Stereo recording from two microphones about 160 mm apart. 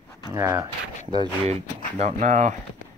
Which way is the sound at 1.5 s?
45° right (ahead or behind).